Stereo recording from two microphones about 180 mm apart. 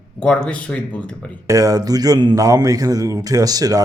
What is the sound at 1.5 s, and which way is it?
Speech, 20° right (ahead or behind).